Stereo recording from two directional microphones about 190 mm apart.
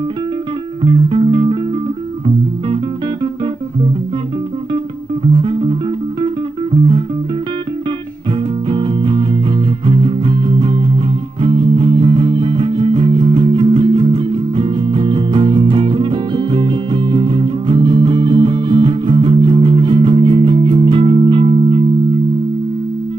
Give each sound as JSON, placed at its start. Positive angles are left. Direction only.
{"t": 0.8, "sound": "music", "side_deg": -30}
{"t": 5.3, "sound": "music", "side_deg": -25}
{"t": 8.6, "sound": "music", "side_deg": -25}